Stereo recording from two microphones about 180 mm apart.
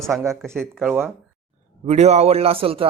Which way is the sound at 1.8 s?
35° right (ahead or behind).